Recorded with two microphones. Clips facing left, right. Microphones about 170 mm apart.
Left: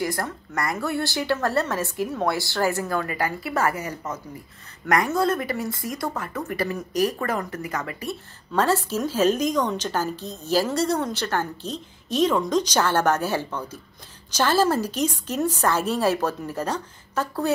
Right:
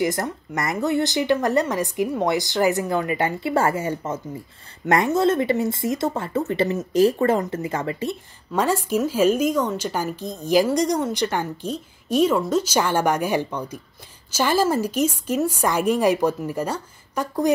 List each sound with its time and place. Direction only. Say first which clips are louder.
0.0 s speech: right 4 dB; 20° right (ahead or behind)
8.5 s a woman's voice: right 1 dB; 10° right (ahead or behind)